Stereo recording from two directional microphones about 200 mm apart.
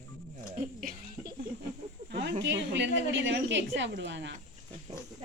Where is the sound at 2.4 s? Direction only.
65° right (ahead or behind).